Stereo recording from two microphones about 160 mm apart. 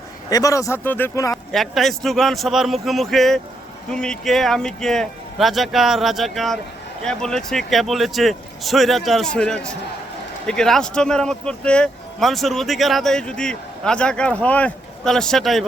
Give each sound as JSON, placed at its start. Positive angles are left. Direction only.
{"t": 0.3, "sound": "speech", "side_deg": 20}
{"t": 1.5, "sound": "speech", "side_deg": 0}